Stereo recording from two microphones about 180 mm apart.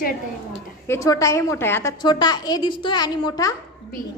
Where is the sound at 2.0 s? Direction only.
25° left (ahead or behind).